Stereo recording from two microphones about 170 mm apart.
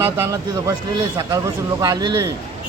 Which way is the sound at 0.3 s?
20° right (ahead or behind).